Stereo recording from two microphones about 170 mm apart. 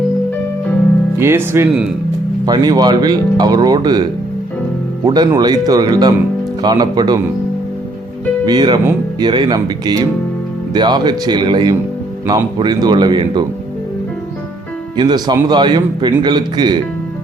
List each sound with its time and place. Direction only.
1.2 s speech: 15° right (ahead or behind)
5.0 s speech: 25° right (ahead or behind)
8.4 s speech: 25° right (ahead or behind)
14.9 s speech: 25° right (ahead or behind)